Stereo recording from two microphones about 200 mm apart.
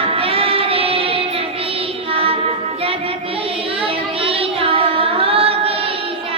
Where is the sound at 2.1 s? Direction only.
30° right (ahead or behind).